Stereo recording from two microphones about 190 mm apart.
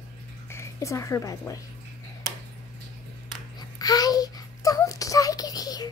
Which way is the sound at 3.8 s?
20° left (ahead or behind).